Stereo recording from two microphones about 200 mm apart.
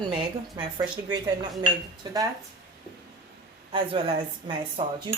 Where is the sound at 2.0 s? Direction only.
20° right (ahead or behind).